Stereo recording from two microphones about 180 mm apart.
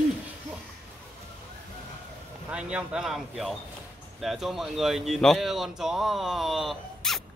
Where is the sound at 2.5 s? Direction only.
5° right (ahead or behind).